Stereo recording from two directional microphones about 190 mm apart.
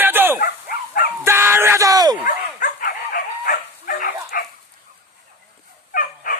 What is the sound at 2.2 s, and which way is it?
Dog, 45° left (ahead or behind).